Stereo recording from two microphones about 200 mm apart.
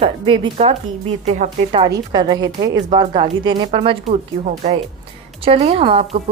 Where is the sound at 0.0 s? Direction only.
25° right (ahead or behind).